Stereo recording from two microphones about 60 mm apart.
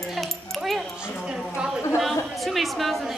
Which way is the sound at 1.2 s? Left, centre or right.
Centre.